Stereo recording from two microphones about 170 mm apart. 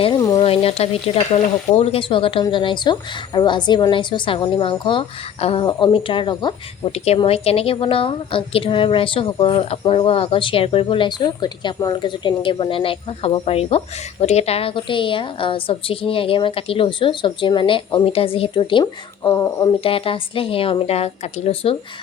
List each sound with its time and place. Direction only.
0.0 s a sound: 25° left (ahead or behind)
0.4 s frying: 35° left (ahead or behind)
1.7 s a woman's voice: 35° left (ahead or behind); by 19.7 s 20° left (ahead or behind)
19.8 s a woman's voice: 30° left (ahead or behind)